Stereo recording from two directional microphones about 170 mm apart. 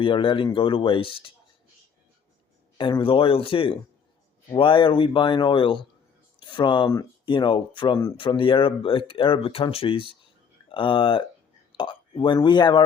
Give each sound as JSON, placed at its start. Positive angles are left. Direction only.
{"t": 0.0, "sound": "speech", "side_deg": 30}
{"t": 2.7, "sound": "speech", "side_deg": 30}